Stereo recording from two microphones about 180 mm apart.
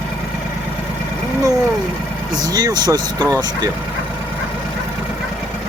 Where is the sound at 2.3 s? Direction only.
20° right (ahead or behind).